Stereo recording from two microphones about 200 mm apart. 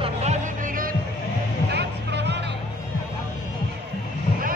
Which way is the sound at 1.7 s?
60° right (ahead or behind).